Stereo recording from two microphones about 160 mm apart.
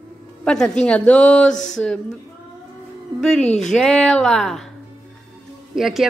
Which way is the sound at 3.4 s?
45° left (ahead or behind).